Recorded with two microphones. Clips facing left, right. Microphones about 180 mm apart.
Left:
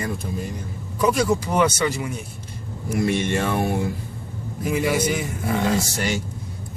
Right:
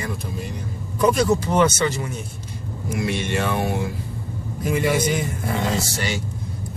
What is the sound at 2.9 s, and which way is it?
Speech, 50° left (ahead or behind).